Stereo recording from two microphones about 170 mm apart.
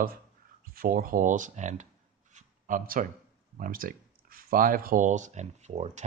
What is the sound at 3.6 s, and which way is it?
Speech, 55° right (ahead or behind).